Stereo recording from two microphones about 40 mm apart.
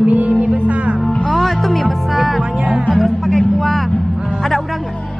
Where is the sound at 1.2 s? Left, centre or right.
Centre.